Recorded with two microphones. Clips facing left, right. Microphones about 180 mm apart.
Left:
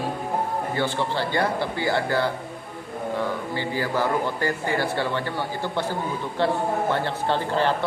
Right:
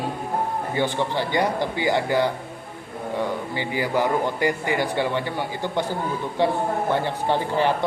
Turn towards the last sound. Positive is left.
turn(degrees=-15)  # may be behind; listen again after turning